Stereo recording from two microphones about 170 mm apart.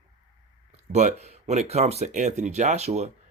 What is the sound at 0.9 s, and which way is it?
Speech, 40° right (ahead or behind).